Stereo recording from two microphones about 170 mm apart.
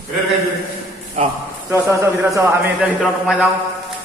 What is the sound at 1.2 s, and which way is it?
Speech, 40° right (ahead or behind).